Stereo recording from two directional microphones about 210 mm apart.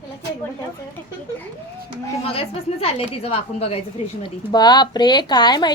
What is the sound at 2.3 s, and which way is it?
A woman's voice, 25° left (ahead or behind).